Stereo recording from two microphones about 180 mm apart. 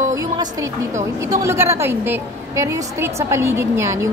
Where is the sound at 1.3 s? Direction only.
15° right (ahead or behind).